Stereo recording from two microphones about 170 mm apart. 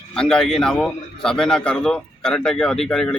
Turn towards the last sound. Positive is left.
turn(degrees=5)  # may be behind; listen again after turning